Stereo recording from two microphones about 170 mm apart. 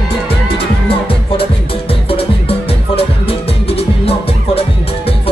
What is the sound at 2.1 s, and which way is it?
Music, 35° left (ahead or behind).